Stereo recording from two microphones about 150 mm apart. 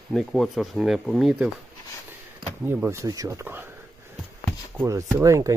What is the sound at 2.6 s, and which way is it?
Speech, 15° right (ahead or behind).